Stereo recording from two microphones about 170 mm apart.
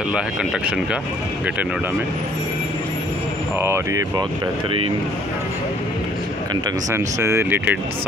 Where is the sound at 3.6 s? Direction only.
15° right (ahead or behind).